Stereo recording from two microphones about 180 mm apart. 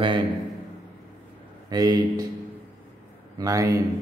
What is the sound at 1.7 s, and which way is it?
Speech, 20° right (ahead or behind).